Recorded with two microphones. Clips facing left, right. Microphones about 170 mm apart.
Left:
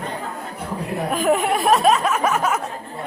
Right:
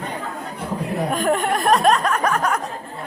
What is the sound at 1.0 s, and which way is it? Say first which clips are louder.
Speech: left 2 dB; centre (ahead or behind).